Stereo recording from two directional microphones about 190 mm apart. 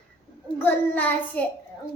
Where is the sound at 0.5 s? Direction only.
10° left (ahead or behind).